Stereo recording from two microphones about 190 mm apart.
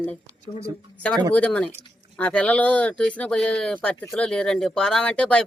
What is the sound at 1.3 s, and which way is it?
Speech, 5° left (ahead or behind).